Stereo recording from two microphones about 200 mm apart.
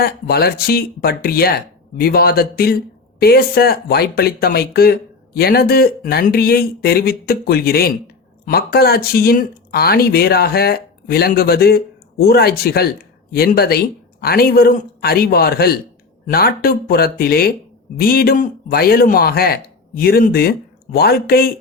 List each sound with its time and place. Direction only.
0.0 s speech: 50° left (ahead or behind)